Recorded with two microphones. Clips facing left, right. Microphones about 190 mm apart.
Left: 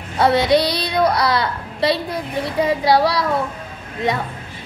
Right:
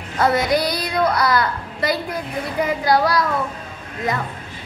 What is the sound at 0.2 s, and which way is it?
A woman's voice, 30° left (ahead or behind).